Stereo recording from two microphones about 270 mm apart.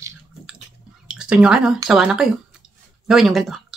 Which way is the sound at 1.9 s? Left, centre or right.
Centre.